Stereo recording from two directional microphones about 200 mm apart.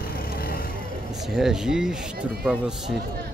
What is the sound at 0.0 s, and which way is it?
Vehicle, 50° left (ahead or behind).